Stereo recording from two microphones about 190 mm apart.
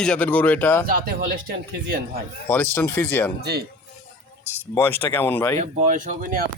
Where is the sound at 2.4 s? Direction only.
10° left (ahead or behind).